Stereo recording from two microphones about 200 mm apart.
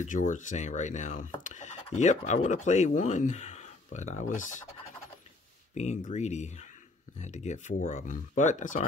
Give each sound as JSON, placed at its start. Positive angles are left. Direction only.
{"t": 0.0, "sound": "speech", "side_deg": 40}
{"t": 5.8, "sound": "speech", "side_deg": 35}